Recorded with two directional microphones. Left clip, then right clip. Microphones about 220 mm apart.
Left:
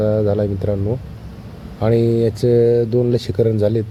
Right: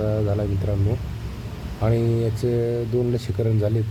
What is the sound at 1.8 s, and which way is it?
Speech, 25° left (ahead or behind).